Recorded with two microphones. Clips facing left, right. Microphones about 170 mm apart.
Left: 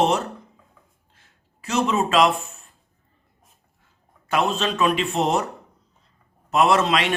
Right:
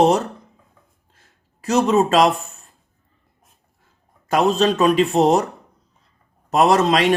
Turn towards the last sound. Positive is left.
turn(degrees=-40)  # may be behind; listen again after turning